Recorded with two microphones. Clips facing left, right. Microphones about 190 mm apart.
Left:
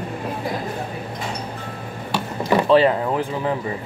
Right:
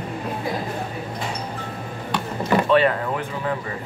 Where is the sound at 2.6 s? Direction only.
30° left (ahead or behind).